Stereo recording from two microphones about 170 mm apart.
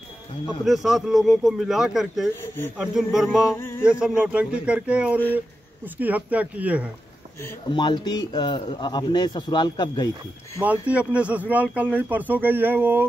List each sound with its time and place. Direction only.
0.7 s speech: centre (ahead or behind)
2.4 s speech: 15° left (ahead or behind)
2.8 s speech: 5° right (ahead or behind)
3.5 s speech: 15° left (ahead or behind)
4.0 s speech: 5° right (ahead or behind)
7.6 s a man's voice: 25° left (ahead or behind)
10.6 s speech: 10° right (ahead or behind)